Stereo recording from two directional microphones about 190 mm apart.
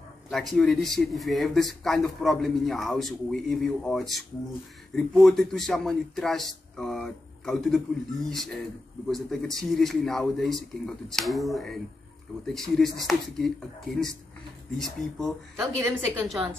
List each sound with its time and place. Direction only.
0.3 s speech: centre (ahead or behind)
15.5 s speech: 15° right (ahead or behind)